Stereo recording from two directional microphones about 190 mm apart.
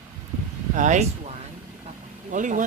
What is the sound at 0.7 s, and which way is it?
Speech, 40° right (ahead or behind).